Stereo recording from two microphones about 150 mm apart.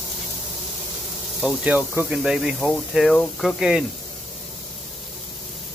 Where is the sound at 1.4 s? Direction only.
5° right (ahead or behind).